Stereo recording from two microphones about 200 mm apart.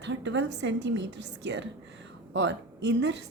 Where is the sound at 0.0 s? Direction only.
65° right (ahead or behind).